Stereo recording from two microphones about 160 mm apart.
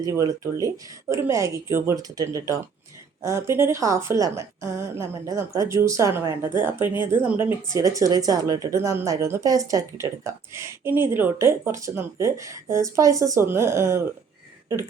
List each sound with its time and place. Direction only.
0.0 s speech: 20° right (ahead or behind)